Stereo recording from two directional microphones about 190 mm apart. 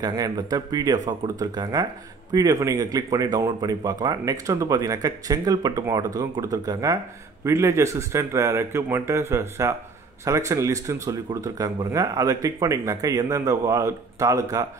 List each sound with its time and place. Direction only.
0.0 s speech: 20° right (ahead or behind)